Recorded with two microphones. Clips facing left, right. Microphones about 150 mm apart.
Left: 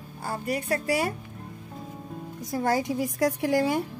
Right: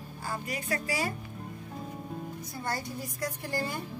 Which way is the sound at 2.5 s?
90° left.